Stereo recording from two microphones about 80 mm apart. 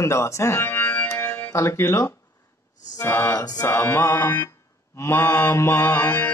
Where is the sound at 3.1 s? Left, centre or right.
Left.